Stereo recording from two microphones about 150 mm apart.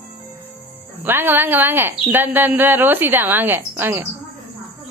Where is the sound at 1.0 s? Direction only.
15° right (ahead or behind).